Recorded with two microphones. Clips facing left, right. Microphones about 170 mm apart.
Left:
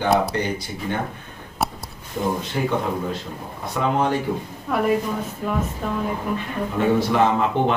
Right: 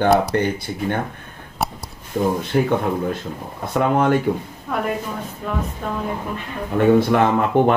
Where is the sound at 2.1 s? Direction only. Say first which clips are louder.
Right 5 dB; 50° right (ahead or behind).